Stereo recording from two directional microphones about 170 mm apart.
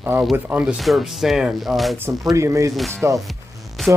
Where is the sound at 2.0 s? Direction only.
20° right (ahead or behind).